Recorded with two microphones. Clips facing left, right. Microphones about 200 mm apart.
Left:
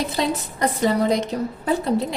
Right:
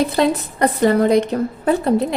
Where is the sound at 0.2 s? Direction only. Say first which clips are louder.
Right 6 dB; 60° right (ahead or behind).